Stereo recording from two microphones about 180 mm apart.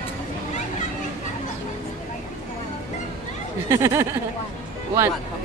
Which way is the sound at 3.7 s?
15° right (ahead or behind).